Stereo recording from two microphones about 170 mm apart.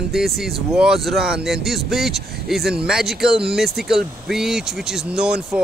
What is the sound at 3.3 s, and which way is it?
Speech, 30° right (ahead or behind).